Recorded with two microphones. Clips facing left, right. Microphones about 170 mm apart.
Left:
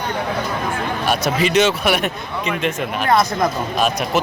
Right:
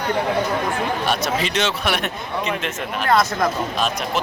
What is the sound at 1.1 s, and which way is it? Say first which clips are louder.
Speech: left 5 dB; 5° left (ahead or behind).